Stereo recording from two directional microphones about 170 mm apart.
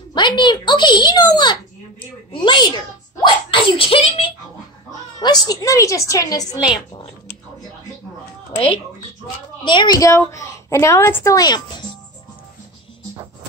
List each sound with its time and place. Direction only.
0.1 s a child's voice: 25° left (ahead or behind)
9.7 s a woman's voice: 25° left (ahead or behind)